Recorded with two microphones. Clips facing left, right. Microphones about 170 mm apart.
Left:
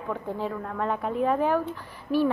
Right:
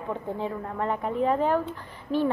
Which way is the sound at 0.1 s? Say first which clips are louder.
Even; 20° right (ahead or behind).